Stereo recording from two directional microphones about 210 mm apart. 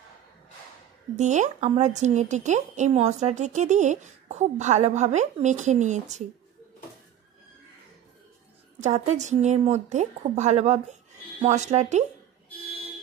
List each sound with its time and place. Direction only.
1.1 s a woman's voice: 35° right (ahead or behind)
8.7 s a woman's voice: 35° right (ahead or behind)